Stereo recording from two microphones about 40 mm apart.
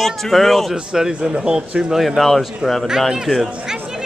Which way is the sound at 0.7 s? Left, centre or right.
Centre.